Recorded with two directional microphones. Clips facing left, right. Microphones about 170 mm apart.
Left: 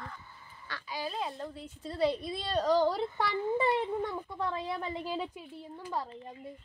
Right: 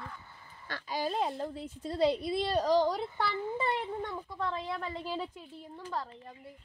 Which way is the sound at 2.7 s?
5° left (ahead or behind).